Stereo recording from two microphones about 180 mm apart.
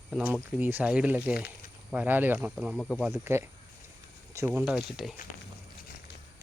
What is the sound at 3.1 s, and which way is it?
Speech, 15° right (ahead or behind).